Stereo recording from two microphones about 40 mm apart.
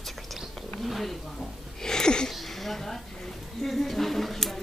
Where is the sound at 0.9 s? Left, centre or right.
Centre.